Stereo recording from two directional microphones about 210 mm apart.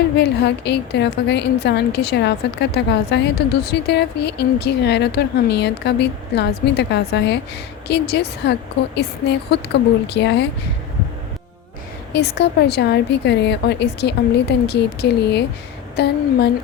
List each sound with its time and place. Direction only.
0.2 s a woman's voice: 55° left (ahead or behind)
12.1 s a woman's voice: 50° left (ahead or behind)